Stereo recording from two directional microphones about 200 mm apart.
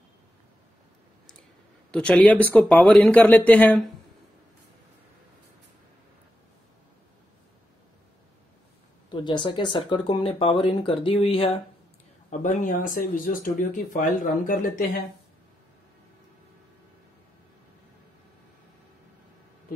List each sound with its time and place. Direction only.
1.9 s speech: 5° left (ahead or behind)
9.1 s speech: 20° left (ahead or behind); by 14.6 s 40° left (ahead or behind)